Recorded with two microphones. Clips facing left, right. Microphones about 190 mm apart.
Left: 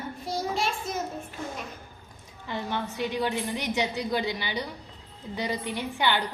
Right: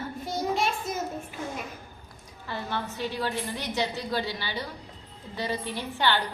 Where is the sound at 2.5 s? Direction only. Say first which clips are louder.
Left 1 dB; 15° left (ahead or behind).